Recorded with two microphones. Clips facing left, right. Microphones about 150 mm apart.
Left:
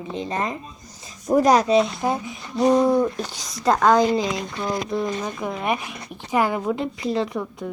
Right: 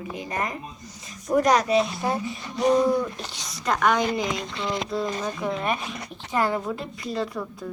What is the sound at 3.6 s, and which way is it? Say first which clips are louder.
Speech: left 6 dB; 30° left (ahead or behind).